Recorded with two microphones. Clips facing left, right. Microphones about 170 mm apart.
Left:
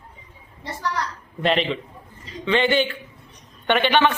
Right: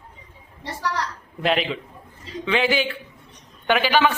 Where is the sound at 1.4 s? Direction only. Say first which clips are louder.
Left 1 dB; 5° right (ahead or behind).